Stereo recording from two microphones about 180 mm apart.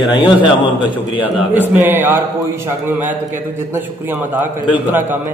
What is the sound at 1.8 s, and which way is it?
Speech, 10° right (ahead or behind).